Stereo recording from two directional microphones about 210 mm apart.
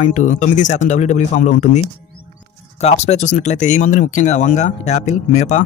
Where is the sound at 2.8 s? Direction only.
30° left (ahead or behind).